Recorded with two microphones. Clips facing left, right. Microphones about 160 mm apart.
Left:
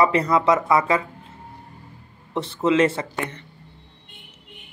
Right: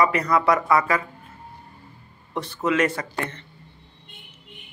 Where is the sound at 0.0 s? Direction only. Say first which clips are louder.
Left 2 dB; 30° left (ahead or behind).